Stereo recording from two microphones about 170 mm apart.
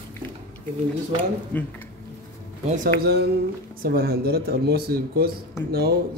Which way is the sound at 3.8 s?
60° right (ahead or behind).